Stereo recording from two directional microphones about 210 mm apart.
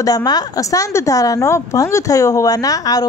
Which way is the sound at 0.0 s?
20° left (ahead or behind).